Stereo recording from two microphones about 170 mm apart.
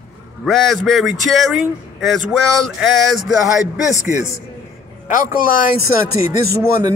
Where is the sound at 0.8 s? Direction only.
Centre (ahead or behind).